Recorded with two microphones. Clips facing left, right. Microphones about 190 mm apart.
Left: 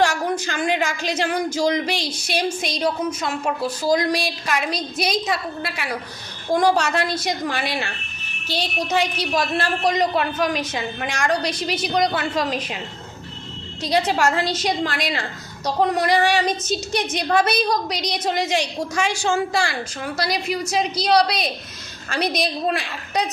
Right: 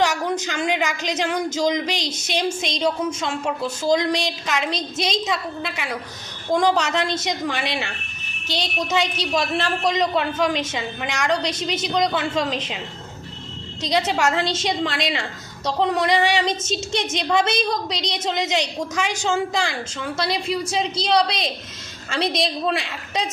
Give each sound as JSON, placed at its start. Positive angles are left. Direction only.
{"t": 0.0, "sound": "a woman's voice", "side_deg": -20}
{"t": 13.8, "sound": "a woman's voice", "side_deg": -20}